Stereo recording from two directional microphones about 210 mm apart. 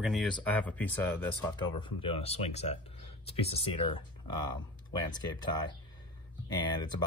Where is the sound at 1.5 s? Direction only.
25° left (ahead or behind).